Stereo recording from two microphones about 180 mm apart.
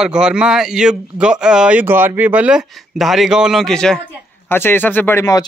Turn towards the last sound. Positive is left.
turn(degrees=20)  # may be behind; listen again after turning